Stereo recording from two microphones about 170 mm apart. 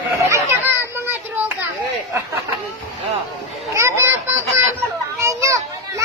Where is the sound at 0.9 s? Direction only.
10° right (ahead or behind).